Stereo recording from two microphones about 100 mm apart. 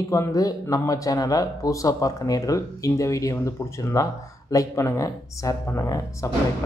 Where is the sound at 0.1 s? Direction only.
35° left (ahead or behind).